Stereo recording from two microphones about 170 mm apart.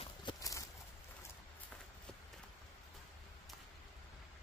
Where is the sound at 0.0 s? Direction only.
25° left (ahead or behind).